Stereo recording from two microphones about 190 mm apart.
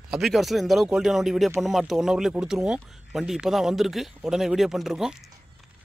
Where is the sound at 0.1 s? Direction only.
Centre (ahead or behind).